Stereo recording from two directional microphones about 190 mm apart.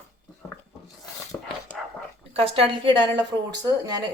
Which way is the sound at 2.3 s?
30° right (ahead or behind).